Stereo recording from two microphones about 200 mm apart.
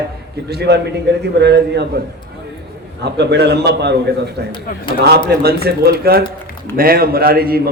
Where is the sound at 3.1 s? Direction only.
55° right (ahead or behind).